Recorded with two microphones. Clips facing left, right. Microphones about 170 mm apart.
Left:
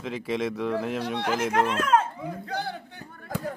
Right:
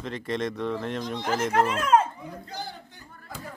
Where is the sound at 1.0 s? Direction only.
65° left (ahead or behind).